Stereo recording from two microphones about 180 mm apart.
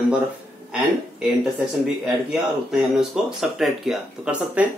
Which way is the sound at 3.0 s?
Centre (ahead or behind).